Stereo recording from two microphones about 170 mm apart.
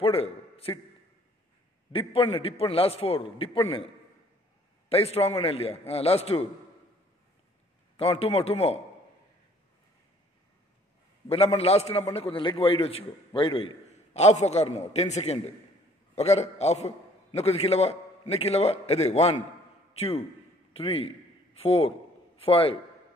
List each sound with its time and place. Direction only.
0.0 s a man's voice: 35° left (ahead or behind)
1.9 s a man's voice: 30° left (ahead or behind)
8.0 s a man's voice: 35° left (ahead or behind)
11.2 s a man's voice: 35° left (ahead or behind)